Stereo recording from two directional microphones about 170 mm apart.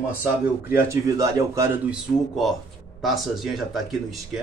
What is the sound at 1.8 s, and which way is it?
Speech, centre (ahead or behind).